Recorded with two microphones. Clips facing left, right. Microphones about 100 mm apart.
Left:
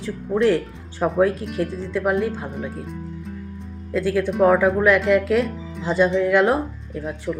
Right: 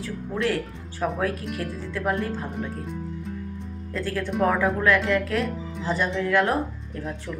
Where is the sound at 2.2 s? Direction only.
15° left (ahead or behind).